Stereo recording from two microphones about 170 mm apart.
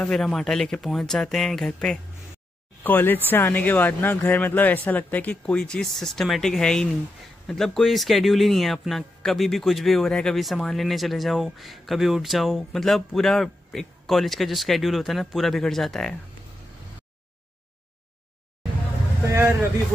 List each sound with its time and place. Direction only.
0.0 s a man's voice: 5° left (ahead or behind)
19.2 s a man's voice: 15° right (ahead or behind)